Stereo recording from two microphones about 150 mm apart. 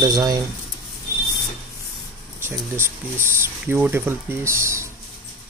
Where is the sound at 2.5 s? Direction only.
15° right (ahead or behind).